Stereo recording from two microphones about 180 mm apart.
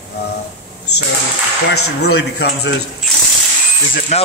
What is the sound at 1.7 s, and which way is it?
Speech, 65° left (ahead or behind).